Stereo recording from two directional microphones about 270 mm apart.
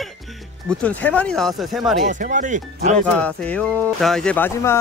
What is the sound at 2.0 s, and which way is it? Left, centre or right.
Speech, right.